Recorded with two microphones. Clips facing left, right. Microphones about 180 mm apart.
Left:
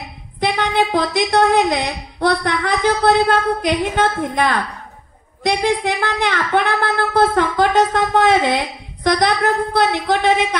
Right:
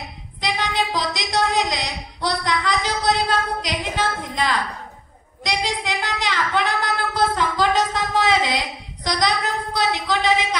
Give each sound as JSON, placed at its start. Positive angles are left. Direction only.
{"t": 0.4, "sound": "speech", "side_deg": 55}